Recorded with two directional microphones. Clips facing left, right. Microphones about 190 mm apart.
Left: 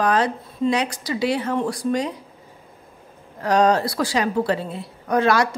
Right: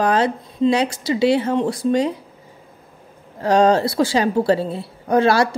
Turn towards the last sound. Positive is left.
turn(degrees=-30)  # may be behind; listen again after turning